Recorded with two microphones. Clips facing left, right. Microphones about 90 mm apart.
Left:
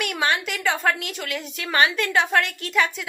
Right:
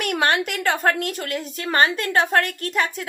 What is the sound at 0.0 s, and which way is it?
A woman's voice, 50° right (ahead or behind).